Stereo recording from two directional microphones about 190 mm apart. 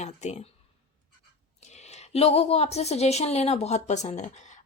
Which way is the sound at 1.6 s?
35° left (ahead or behind).